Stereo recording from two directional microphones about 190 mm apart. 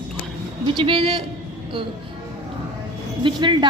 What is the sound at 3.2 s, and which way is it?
Speech, 25° right (ahead or behind).